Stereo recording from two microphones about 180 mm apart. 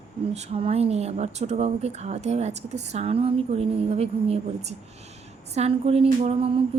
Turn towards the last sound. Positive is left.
turn(degrees=-30)  # may be behind; listen again after turning